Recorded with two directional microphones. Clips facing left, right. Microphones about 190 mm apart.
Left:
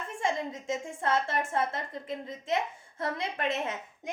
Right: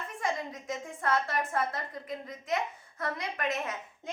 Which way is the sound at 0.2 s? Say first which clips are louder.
Left 3 dB; 25° left (ahead or behind).